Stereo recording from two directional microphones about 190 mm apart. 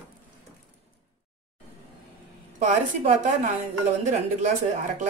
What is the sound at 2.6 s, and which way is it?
Speech, 40° right (ahead or behind).